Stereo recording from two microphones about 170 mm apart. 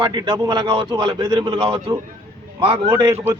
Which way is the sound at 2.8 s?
20° right (ahead or behind).